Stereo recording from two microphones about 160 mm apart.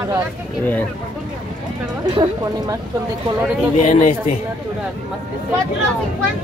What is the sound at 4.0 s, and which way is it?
Speech, 50° left (ahead or behind).